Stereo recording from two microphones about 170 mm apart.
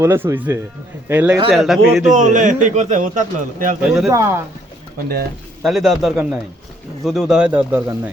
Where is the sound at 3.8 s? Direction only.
5° right (ahead or behind).